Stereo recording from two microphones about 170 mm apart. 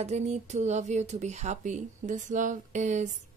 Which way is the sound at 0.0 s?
40° right (ahead or behind).